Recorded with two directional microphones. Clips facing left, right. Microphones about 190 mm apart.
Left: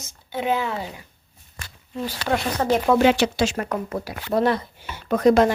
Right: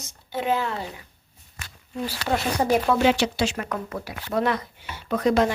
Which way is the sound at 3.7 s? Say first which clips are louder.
Left 4 dB; 35° left (ahead or behind).